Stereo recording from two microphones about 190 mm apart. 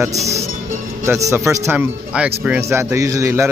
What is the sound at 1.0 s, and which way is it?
Speech, 15° right (ahead or behind).